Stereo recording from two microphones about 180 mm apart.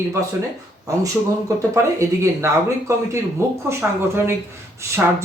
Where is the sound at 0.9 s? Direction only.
15° right (ahead or behind).